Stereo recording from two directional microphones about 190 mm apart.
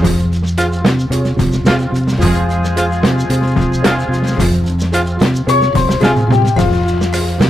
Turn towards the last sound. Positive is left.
turn(degrees=0)  # may be behind; listen again after turning